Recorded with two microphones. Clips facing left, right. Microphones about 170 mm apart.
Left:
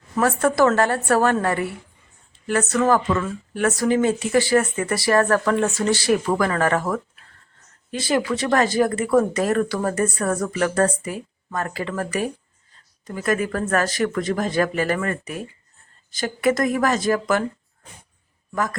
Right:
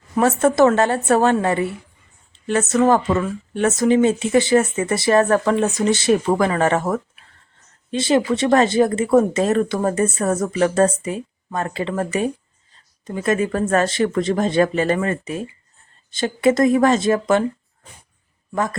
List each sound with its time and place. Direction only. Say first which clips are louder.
0.2 s speech: right 3 dB; 25° right (ahead or behind)
18.5 s speech: right 3 dB; 25° right (ahead or behind)